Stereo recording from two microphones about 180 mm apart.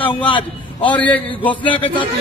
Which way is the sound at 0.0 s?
30° left (ahead or behind).